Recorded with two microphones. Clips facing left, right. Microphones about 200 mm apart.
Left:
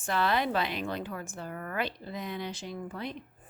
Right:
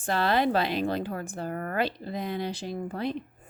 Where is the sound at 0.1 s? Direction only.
35° right (ahead or behind).